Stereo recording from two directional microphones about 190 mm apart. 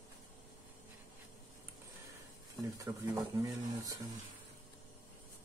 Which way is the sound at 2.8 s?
15° right (ahead or behind).